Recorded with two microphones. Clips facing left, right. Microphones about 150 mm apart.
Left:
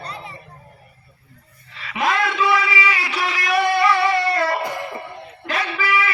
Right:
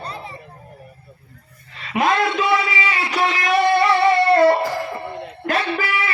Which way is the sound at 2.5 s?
25° right (ahead or behind).